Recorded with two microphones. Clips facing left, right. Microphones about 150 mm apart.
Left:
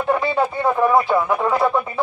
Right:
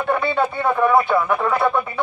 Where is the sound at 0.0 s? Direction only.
15° left (ahead or behind).